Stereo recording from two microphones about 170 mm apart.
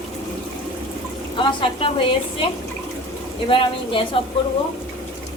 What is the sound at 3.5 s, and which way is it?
Speech, 30° left (ahead or behind).